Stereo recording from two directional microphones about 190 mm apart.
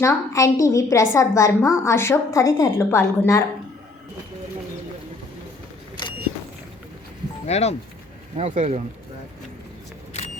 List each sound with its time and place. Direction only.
0.0 s a woman's voice: 15° left (ahead or behind)
7.4 s speech: 35° left (ahead or behind)
8.4 s speech: 40° right (ahead or behind)